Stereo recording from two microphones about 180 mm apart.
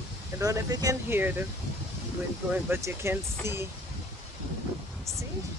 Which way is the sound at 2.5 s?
10° right (ahead or behind).